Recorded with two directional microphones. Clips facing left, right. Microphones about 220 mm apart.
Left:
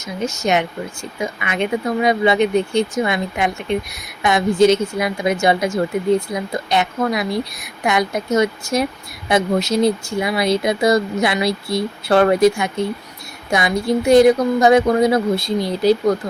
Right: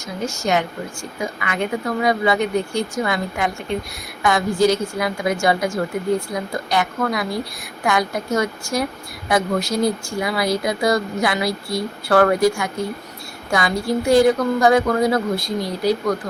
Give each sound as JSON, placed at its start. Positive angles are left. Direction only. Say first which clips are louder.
{"t": 0.2, "sound": "a woman's voice", "louder": "left 2 dB", "side_deg": 20}